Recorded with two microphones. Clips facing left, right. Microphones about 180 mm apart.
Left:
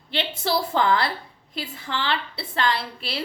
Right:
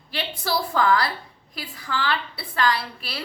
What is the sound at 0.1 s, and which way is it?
A woman's voice, 25° left (ahead or behind).